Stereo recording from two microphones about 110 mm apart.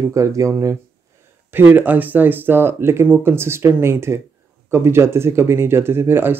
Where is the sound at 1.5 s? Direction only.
15° right (ahead or behind).